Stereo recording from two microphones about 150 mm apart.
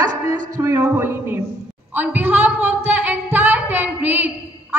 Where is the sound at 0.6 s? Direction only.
15° right (ahead or behind).